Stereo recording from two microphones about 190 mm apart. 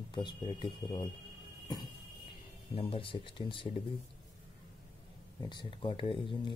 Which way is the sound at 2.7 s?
30° left (ahead or behind).